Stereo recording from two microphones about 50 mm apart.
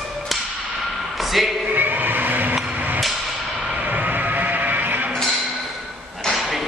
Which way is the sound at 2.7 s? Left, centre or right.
Right.